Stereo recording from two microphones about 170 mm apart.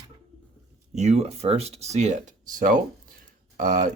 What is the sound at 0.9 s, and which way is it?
Speech, 40° right (ahead or behind).